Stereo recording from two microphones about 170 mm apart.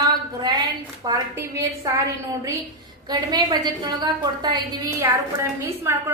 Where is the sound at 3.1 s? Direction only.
25° right (ahead or behind).